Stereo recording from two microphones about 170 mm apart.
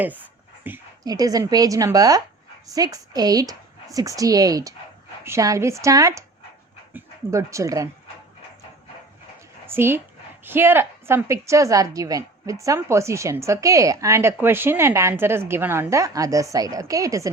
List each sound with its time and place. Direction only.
0.7 s speech: 10° right (ahead or behind)
1.0 s a woman's voice: 20° right (ahead or behind)
9.6 s a woman's voice: 15° right (ahead or behind)